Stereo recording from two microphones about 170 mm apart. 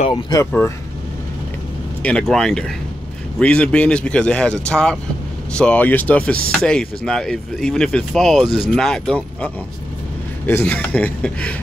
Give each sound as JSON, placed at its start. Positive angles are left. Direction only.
{"t": 0.1, "sound": "speech", "side_deg": 20}
{"t": 0.5, "sound": "speech", "side_deg": 10}
{"t": 2.0, "sound": "speech", "side_deg": 5}